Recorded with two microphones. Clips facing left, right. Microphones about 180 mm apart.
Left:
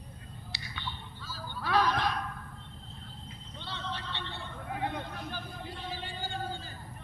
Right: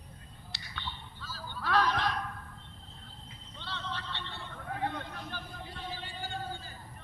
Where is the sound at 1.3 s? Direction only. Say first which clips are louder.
Left 1 dB; 5° left (ahead or behind).